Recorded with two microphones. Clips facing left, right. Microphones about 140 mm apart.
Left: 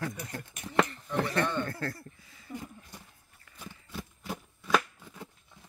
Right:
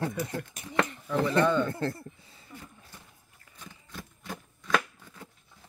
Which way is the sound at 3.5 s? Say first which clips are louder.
Left 3 dB; 10° left (ahead or behind).